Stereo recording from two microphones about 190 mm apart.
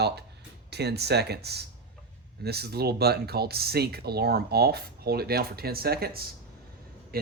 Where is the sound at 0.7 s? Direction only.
60° right (ahead or behind).